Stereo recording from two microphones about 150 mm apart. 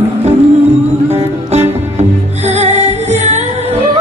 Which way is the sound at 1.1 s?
45° right (ahead or behind).